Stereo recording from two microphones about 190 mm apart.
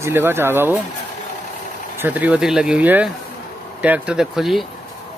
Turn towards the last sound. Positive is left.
turn(degrees=0)  # may be behind; listen again after turning